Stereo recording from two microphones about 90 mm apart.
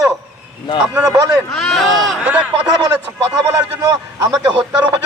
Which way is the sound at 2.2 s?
15° right (ahead or behind).